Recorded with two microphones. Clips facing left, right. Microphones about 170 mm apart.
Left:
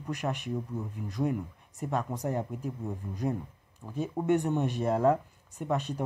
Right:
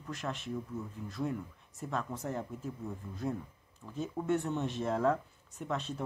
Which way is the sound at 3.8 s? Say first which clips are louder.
Left 5 dB; 10° left (ahead or behind).